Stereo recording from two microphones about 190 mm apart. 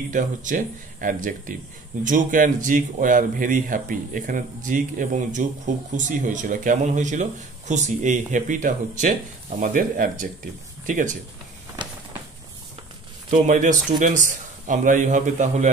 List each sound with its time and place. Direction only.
0.1 s speech: 40° right (ahead or behind)
11.8 s a sound: 25° right (ahead or behind)
13.3 s a man's voice: 40° right (ahead or behind)